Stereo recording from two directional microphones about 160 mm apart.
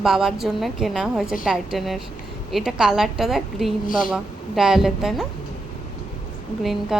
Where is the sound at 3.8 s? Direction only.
60° left (ahead or behind).